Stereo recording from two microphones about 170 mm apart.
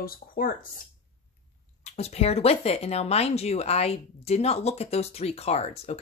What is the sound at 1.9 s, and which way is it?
Speech, 40° left (ahead or behind).